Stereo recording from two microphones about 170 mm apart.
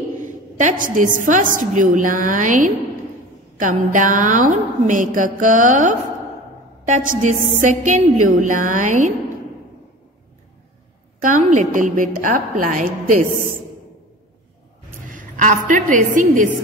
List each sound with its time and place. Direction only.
0.2 s a woman's voice: 45° right (ahead or behind)
11.1 s a woman's voice: 50° right (ahead or behind)
15.0 s a woman's voice: 50° right (ahead or behind)